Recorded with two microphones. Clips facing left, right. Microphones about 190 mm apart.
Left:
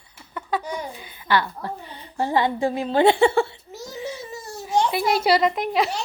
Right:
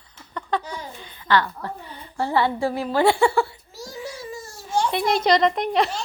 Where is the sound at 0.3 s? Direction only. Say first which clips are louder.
Even; 10° left (ahead or behind).